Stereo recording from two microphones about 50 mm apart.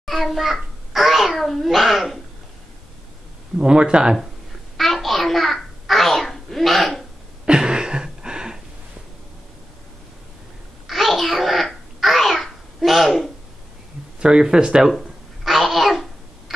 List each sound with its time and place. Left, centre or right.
0.0 s a child's voice: centre
3.5 s speech: centre
4.7 s babbling: centre
7.4 s a sound: centre
10.9 s babbling: centre
14.2 s speech: centre
14.9 s babbling: centre